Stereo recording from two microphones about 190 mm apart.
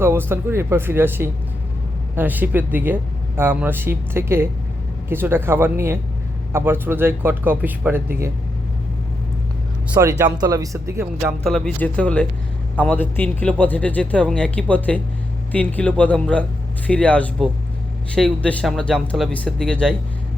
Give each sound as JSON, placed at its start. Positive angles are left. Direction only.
{"t": 0.0, "sound": "speech", "side_deg": -10}
{"t": 9.9, "sound": "speech", "side_deg": -15}
{"t": 11.4, "sound": "a man's voice", "side_deg": 5}